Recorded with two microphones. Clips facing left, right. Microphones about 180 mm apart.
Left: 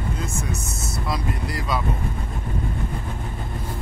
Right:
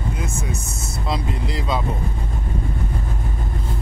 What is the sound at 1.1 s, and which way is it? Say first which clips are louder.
Vehicle: right 3 dB; 25° right (ahead or behind).